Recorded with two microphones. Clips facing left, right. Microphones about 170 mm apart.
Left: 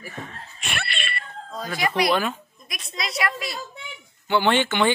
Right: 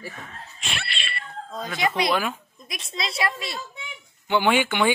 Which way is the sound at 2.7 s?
25° right (ahead or behind).